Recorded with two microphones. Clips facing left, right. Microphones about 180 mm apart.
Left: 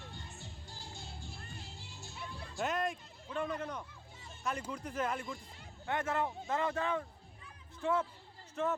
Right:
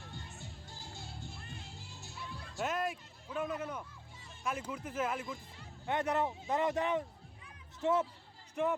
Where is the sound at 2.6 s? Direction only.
Centre (ahead or behind).